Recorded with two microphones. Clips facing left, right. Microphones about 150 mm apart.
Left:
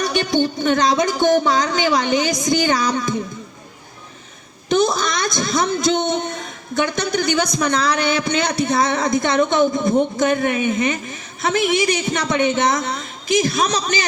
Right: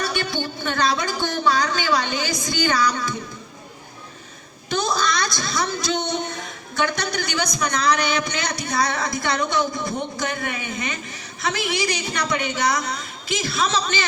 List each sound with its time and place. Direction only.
0.0 s speech: 20° left (ahead or behind)
4.7 s a woman's voice: 20° left (ahead or behind)